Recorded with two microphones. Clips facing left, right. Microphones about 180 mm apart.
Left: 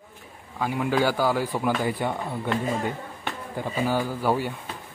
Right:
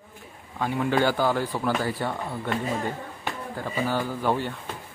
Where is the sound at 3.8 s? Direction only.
10° left (ahead or behind).